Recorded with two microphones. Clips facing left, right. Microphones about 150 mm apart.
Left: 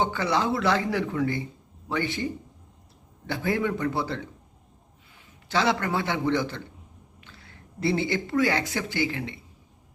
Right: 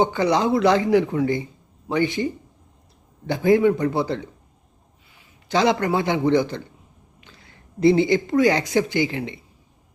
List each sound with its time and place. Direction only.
0.0 s speech: 15° right (ahead or behind)
3.2 s speech: 15° right (ahead or behind)
5.5 s speech: 15° right (ahead or behind)
7.8 s speech: 15° right (ahead or behind)